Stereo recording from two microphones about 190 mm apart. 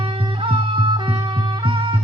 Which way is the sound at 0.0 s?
25° right (ahead or behind).